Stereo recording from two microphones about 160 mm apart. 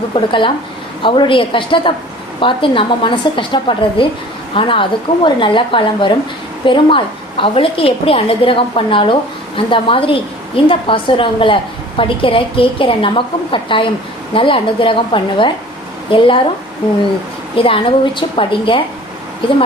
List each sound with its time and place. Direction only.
0.1 s a woman's voice: 30° left (ahead or behind)
17.5 s a woman's voice: 35° left (ahead or behind)